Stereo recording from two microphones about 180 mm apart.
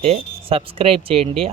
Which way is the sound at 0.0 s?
30° right (ahead or behind).